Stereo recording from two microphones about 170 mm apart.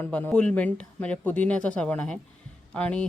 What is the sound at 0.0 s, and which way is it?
Speech, 10° left (ahead or behind).